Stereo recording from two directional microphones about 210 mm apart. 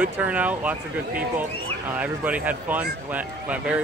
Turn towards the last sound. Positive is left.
turn(degrees=-5)  # may be behind; listen again after turning